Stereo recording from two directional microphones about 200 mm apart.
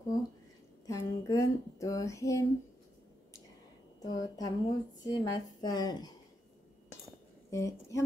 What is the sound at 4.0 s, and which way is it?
A woman's voice, 20° left (ahead or behind).